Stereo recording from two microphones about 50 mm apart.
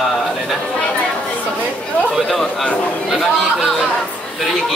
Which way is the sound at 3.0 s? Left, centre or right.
Centre.